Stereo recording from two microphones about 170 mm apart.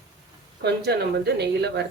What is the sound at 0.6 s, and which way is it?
Speech, 75° right (ahead or behind).